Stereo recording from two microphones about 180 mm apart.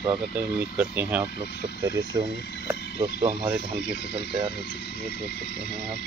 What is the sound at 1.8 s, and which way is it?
Speech, 20° right (ahead or behind).